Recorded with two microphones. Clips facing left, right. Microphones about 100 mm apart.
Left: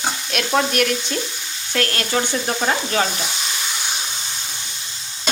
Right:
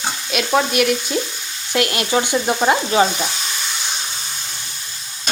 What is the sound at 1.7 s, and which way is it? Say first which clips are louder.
Stir: right 3 dB; 15° right (ahead or behind).